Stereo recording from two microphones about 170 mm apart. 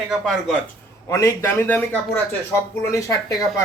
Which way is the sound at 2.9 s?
20° left (ahead or behind).